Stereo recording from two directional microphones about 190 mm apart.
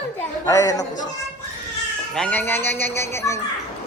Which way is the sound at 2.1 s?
10° left (ahead or behind).